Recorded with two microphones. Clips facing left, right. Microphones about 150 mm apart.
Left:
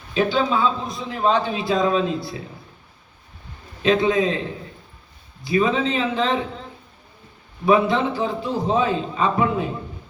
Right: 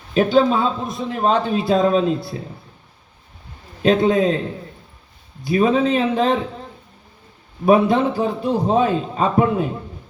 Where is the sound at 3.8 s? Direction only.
50° right (ahead or behind).